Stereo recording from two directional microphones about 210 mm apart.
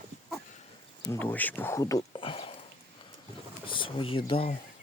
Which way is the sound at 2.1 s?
25° left (ahead or behind).